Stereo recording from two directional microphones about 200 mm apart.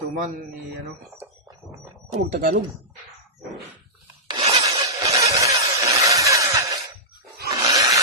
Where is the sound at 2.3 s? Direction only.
50° right (ahead or behind).